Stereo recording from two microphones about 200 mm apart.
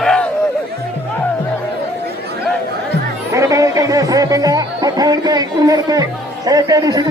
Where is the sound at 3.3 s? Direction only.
15° right (ahead or behind).